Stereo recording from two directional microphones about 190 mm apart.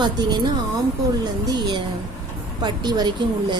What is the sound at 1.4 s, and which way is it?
Speech, 25° right (ahead or behind).